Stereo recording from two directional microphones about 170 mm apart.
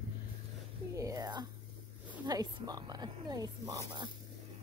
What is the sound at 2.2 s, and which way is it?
Snake, 25° right (ahead or behind).